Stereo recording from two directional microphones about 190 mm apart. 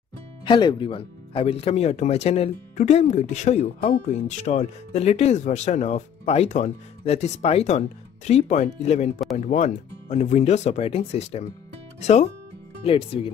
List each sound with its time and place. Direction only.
0.5 s speech: 25° left (ahead or behind)